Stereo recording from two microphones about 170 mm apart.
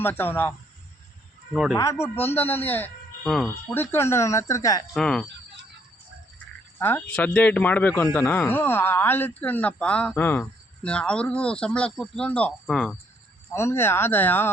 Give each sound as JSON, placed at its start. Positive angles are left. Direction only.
{"t": 0.0, "sound": "speech", "side_deg": 10}
{"t": 1.7, "sound": "speech", "side_deg": 15}
{"t": 3.8, "sound": "speech", "side_deg": 15}
{"t": 4.9, "sound": "speech", "side_deg": 5}
{"t": 6.7, "sound": "speech", "side_deg": 10}
{"t": 13.5, "sound": "speech", "side_deg": 15}